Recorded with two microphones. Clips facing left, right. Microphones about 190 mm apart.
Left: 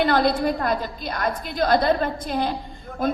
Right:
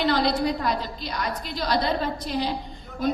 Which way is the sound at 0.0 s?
55° left (ahead or behind).